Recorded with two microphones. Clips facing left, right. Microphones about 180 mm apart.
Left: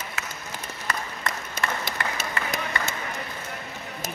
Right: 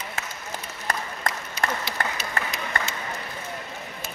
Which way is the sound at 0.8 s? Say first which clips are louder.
Right 2 dB; 45° right (ahead or behind).